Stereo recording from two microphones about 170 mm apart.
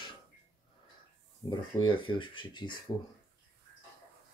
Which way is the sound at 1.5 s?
25° left (ahead or behind).